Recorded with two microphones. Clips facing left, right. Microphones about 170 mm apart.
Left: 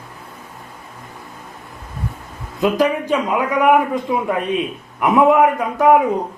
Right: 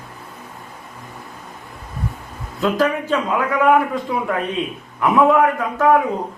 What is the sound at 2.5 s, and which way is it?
A man's voice, 15° left (ahead or behind).